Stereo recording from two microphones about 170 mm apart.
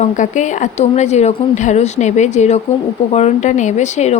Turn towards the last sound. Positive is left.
turn(degrees=40)  # may be behind; listen again after turning